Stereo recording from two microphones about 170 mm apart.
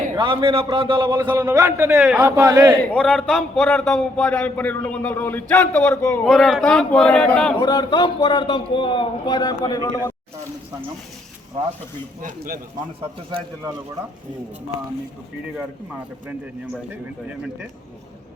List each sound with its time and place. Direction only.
0.2 s a man's voice: 30° right (ahead or behind); by 2.2 s 10° right (ahead or behind)
2.2 s a man's voice: 20° right (ahead or behind)
3.0 s a man's voice: centre (ahead or behind)
7.6 s a man's voice: 25° left (ahead or behind)
13.0 s speech: 30° right (ahead or behind)